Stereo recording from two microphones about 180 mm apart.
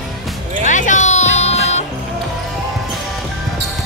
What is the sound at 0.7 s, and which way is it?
Music, 45° left (ahead or behind).